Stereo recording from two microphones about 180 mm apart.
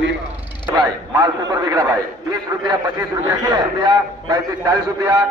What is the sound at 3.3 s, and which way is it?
A man's voice, 20° right (ahead or behind).